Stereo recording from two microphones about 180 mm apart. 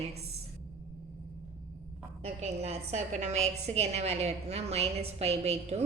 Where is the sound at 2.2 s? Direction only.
35° right (ahead or behind).